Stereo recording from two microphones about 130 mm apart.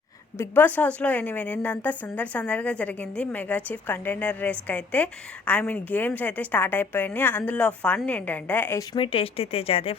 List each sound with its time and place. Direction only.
0.3 s a woman's voice: 15° left (ahead or behind)
9.0 s speech: 45° left (ahead or behind)